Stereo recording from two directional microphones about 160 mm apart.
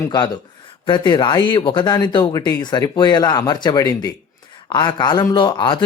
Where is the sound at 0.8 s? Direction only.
30° left (ahead or behind).